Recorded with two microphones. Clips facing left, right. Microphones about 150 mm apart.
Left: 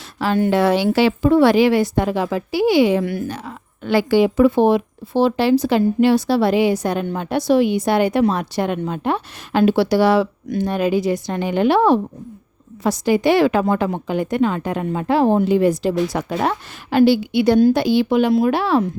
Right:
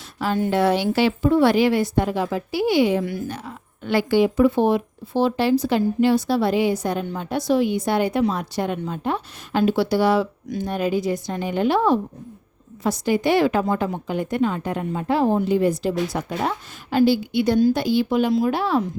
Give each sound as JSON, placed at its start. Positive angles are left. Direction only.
{"t": 0.2, "sound": "a woman's voice", "side_deg": 80}
{"t": 12.8, "sound": "a woman's voice", "side_deg": 90}